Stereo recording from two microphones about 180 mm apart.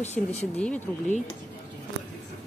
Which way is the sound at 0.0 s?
40° left (ahead or behind).